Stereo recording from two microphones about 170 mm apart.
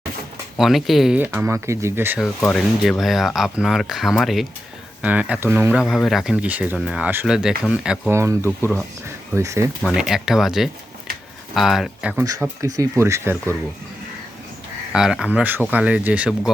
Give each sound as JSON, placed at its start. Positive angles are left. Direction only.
{"t": 0.5, "sound": "speech", "side_deg": 0}
{"t": 2.2, "sound": "speech", "side_deg": 5}
{"t": 8.1, "sound": "speech", "side_deg": -15}
{"t": 9.8, "sound": "speech", "side_deg": -5}
{"t": 12.2, "sound": "speech", "side_deg": -20}
{"t": 14.9, "sound": "speech", "side_deg": -5}